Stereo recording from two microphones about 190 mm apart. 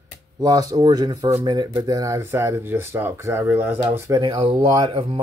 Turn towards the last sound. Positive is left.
turn(degrees=-30)  # may be behind; listen again after turning